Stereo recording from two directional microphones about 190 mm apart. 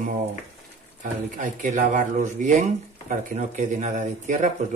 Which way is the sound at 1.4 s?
40° right (ahead or behind).